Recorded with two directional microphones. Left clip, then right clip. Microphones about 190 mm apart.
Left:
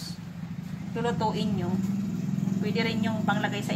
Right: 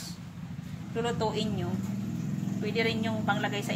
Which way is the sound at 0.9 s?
15° right (ahead or behind).